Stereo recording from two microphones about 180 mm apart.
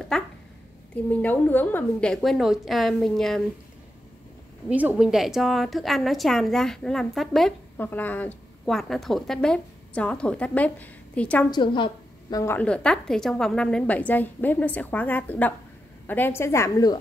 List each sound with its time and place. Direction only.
0.1 s a woman's voice: 5° left (ahead or behind)
4.6 s a woman's voice: 10° right (ahead or behind); by 11.4 s 10° left (ahead or behind)
11.5 s a woman's voice: 25° left (ahead or behind)